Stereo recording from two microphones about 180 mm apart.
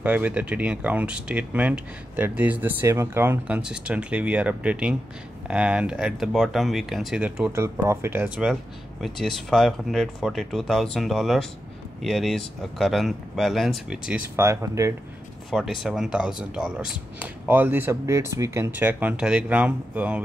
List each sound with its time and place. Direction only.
0.0 s speech: 10° right (ahead or behind)
14.3 s speech: 15° right (ahead or behind)
15.5 s speech: centre (ahead or behind)